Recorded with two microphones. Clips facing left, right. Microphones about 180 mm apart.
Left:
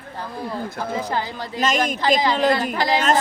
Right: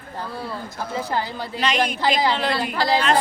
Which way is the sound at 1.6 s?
45° left (ahead or behind).